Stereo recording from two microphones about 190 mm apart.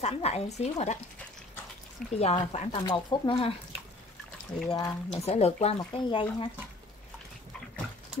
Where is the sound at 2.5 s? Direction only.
35° left (ahead or behind).